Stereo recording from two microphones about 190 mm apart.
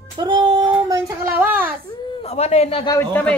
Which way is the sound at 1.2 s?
10° right (ahead or behind).